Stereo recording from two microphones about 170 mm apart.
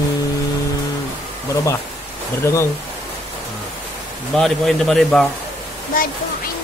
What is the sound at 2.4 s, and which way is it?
Speech, 15° left (ahead or behind).